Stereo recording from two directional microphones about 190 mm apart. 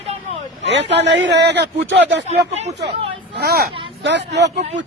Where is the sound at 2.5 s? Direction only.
35° right (ahead or behind).